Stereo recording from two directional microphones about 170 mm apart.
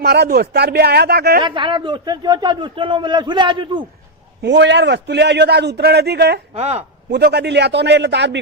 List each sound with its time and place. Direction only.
0.0 s speech: 70° right (ahead or behind)
1.4 s speech: 30° right (ahead or behind)
4.4 s a man's voice: 90° right
6.5 s speech: 40° right (ahead or behind)
7.1 s a man's voice: 80° right